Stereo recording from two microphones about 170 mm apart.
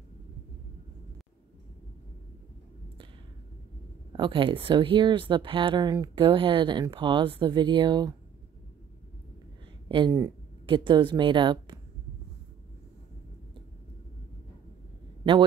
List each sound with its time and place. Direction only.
4.1 s speech: 30° right (ahead or behind)
9.8 s speech: 30° right (ahead or behind)
15.2 s speech: 30° right (ahead or behind)